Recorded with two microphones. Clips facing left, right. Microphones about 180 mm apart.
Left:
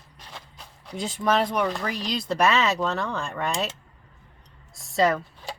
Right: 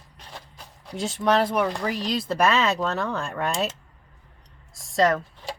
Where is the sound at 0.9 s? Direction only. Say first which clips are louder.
Right 2 dB; centre (ahead or behind).